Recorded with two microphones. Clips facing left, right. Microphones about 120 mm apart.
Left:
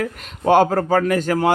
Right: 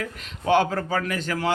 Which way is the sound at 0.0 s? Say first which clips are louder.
Left 7 dB; 45° left (ahead or behind).